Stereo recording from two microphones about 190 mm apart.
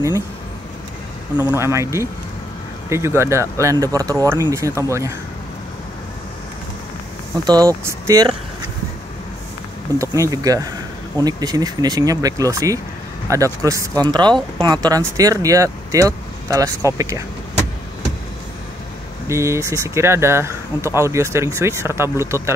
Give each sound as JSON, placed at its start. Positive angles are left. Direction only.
{"t": 1.5, "sound": "speech", "side_deg": -15}
{"t": 7.4, "sound": "speech", "side_deg": -20}
{"t": 9.9, "sound": "speech", "side_deg": -15}
{"t": 19.2, "sound": "speech", "side_deg": -15}